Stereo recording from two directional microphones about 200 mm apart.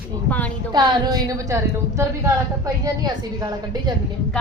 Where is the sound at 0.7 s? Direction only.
20° right (ahead or behind).